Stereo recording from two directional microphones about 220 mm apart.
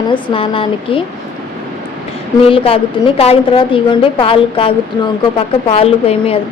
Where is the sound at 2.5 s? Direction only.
25° left (ahead or behind).